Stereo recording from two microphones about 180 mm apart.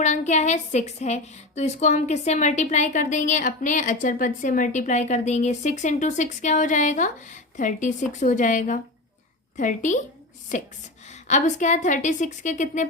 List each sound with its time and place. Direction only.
0.0 s a woman's voice: 40° left (ahead or behind)